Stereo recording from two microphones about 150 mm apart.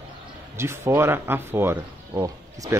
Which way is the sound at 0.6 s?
15° right (ahead or behind).